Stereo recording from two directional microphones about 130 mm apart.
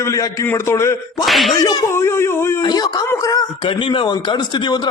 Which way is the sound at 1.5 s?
30° left (ahead or behind).